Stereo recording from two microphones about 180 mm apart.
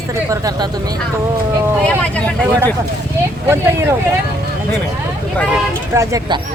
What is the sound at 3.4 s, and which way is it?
Speech, 15° right (ahead or behind).